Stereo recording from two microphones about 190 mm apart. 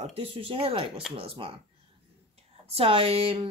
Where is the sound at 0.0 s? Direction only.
30° right (ahead or behind).